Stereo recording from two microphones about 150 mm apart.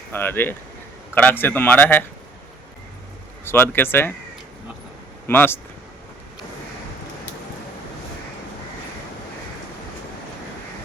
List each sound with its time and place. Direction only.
0.1 s a man's voice: 15° left (ahead or behind)
3.4 s a man's voice: 15° left (ahead or behind)
5.3 s a man's voice: 15° left (ahead or behind)